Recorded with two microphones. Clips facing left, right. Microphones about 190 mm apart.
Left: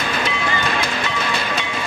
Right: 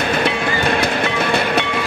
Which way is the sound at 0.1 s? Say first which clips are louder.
Right 4 dB; 55° right (ahead or behind).